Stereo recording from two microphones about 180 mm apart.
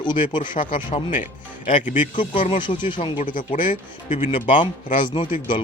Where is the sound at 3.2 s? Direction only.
45° left (ahead or behind).